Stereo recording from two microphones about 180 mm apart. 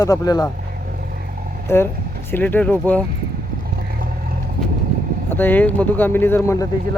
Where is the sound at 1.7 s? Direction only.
15° left (ahead or behind).